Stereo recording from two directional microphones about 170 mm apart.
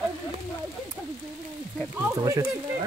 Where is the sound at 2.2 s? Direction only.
20° right (ahead or behind).